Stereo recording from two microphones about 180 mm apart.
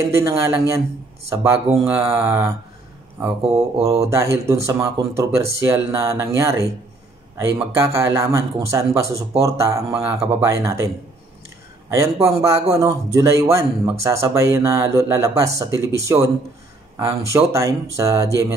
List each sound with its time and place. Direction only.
0.1 s a man's voice: 15° right (ahead or behind)
11.9 s a man's voice: 15° right (ahead or behind)